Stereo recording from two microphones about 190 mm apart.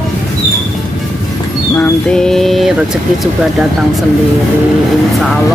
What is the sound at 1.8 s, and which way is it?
Speech, 5° left (ahead or behind).